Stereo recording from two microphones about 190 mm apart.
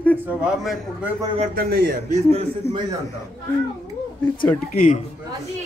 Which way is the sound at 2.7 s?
10° left (ahead or behind).